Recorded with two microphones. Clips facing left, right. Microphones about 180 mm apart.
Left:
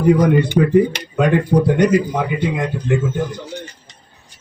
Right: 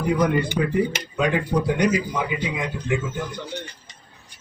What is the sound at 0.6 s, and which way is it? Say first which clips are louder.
Speech: left 8 dB; 50° left (ahead or behind).